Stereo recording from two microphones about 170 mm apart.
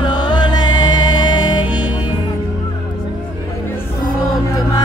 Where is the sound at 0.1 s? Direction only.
25° left (ahead or behind).